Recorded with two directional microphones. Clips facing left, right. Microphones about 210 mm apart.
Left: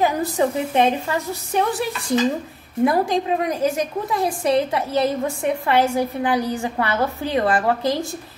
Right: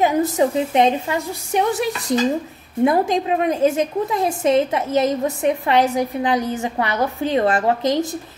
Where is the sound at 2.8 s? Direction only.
20° right (ahead or behind).